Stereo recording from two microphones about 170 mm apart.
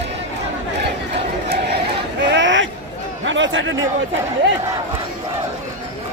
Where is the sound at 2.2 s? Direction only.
90° right.